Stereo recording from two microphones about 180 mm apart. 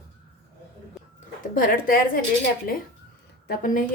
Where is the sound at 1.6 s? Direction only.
50° left (ahead or behind).